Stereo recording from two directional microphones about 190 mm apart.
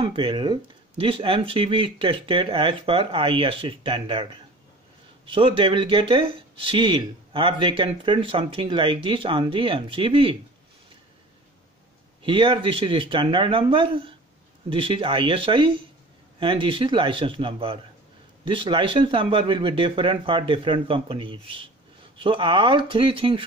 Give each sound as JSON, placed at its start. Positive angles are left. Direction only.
{"t": 0.0, "sound": "speech", "side_deg": -30}
{"t": 12.2, "sound": "speech", "side_deg": -25}